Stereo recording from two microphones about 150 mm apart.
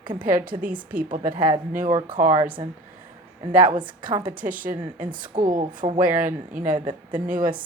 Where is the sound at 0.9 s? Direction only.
65° right (ahead or behind).